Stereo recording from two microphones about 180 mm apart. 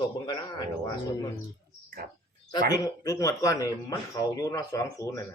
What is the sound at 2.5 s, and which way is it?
Speech, 20° left (ahead or behind).